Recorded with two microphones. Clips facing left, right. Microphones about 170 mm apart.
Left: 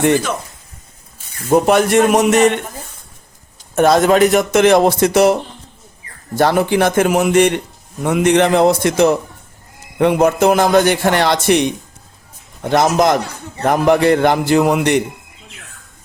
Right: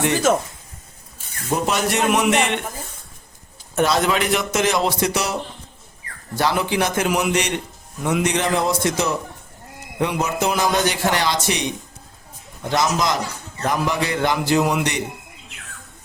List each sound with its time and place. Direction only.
0.3 s speech: 45° right (ahead or behind)
1.5 s a man's voice: 55° left (ahead or behind)
3.8 s a man's voice: 50° left (ahead or behind)
12.6 s a man's voice: 55° left (ahead or behind)